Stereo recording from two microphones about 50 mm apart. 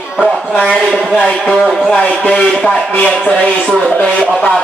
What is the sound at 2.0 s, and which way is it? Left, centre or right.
Speech, left.